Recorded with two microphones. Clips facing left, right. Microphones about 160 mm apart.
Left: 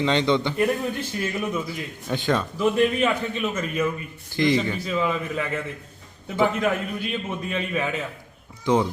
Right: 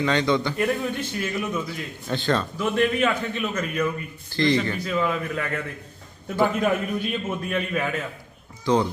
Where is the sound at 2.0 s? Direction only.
15° left (ahead or behind).